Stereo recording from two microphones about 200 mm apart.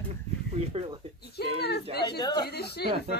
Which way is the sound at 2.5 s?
55° left (ahead or behind).